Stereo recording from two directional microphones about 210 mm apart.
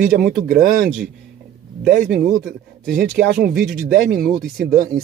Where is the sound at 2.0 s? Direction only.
Centre (ahead or behind).